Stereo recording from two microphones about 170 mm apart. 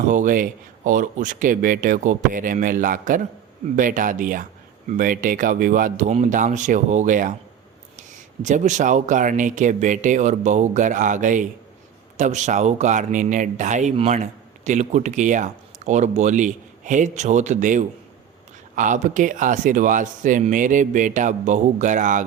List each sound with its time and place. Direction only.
0.1 s speech: 50° right (ahead or behind)